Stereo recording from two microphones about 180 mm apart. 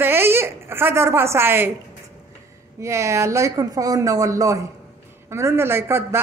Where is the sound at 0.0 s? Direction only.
15° right (ahead or behind).